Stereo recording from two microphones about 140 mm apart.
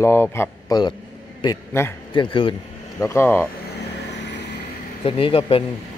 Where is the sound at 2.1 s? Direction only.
35° left (ahead or behind).